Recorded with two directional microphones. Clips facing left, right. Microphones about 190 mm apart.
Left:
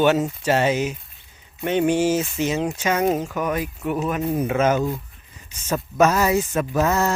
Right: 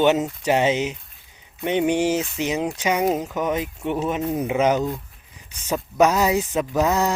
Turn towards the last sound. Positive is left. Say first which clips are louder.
# even
turn(degrees=-15)  # may be behind; listen again after turning